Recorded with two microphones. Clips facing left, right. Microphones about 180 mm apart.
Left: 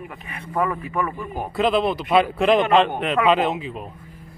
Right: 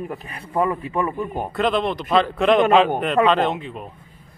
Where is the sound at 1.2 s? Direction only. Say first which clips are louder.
Even; centre (ahead or behind).